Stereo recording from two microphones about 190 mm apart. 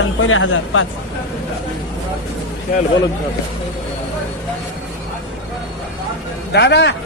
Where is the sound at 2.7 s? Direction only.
50° left (ahead or behind).